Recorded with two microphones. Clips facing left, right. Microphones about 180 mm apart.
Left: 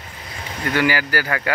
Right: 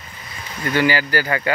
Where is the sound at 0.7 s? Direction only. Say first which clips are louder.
Right 2 dB; 10° left (ahead or behind).